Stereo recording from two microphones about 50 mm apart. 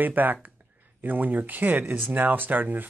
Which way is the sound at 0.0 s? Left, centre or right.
Right.